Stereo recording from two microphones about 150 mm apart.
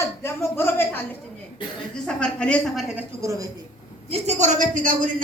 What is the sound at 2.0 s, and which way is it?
Speech, 5° left (ahead or behind).